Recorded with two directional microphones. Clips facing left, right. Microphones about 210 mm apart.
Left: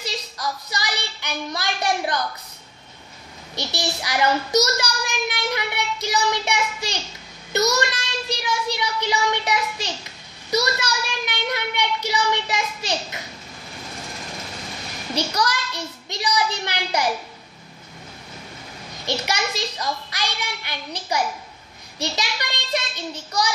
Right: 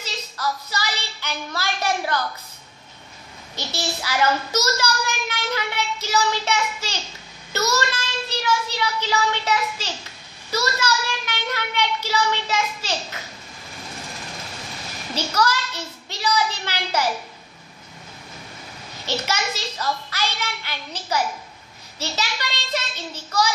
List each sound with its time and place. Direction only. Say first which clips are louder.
0.0 s a woman's voice: even; 15° left (ahead or behind)
3.5 s a child's voice: left 1 dB; 15° left (ahead or behind)
15.1 s a child's voice: right 1 dB; 15° left (ahead or behind)
19.0 s a child's voice: even; 15° left (ahead or behind)